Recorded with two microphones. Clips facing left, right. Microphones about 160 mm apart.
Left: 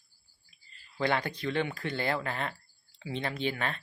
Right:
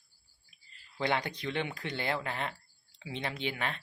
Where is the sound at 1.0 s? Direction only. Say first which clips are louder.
Left 2 dB; 20° right (ahead or behind).